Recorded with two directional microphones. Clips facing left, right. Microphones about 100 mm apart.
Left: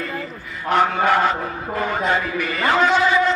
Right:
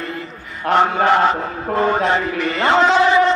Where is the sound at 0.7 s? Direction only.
25° right (ahead or behind).